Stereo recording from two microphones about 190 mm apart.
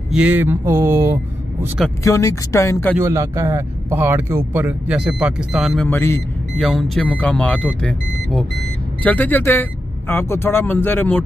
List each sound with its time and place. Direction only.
0.1 s speech: 5° right (ahead or behind)
2.0 s speech: 15° left (ahead or behind)
3.0 s speech: 15° right (ahead or behind)
5.9 s speech: 15° left (ahead or behind)
6.6 s speech: centre (ahead or behind)